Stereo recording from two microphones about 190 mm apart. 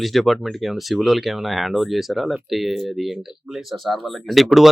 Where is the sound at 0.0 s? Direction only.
Centre (ahead or behind).